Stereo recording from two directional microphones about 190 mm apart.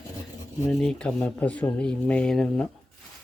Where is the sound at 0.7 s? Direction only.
Centre (ahead or behind).